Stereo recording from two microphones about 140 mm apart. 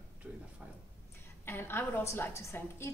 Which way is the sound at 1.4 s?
15° left (ahead or behind).